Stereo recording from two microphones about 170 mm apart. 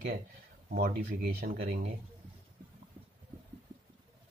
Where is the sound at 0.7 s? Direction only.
60° right (ahead or behind).